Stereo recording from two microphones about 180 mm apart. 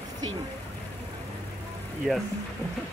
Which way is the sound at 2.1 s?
Centre (ahead or behind).